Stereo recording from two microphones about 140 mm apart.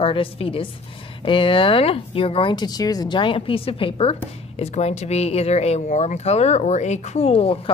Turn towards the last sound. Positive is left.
turn(degrees=40)  # may be behind; listen again after turning